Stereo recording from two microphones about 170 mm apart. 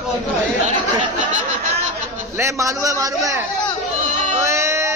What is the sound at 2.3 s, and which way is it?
A man's voice, 15° right (ahead or behind).